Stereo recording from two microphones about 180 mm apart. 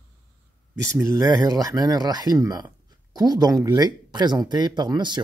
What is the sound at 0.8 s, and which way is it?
Speech, 15° right (ahead or behind).